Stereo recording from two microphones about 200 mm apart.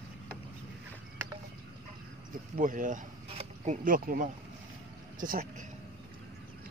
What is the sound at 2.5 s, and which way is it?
Speech, 40° right (ahead or behind).